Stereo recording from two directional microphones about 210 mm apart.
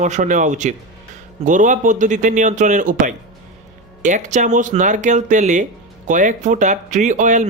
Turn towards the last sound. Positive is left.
turn(degrees=-35)  # may be behind; listen again after turning